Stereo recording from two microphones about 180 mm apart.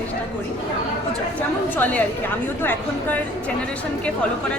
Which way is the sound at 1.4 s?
10° left (ahead or behind).